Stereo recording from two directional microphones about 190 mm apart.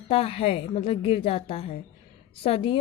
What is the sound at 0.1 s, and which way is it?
Speech, 30° left (ahead or behind).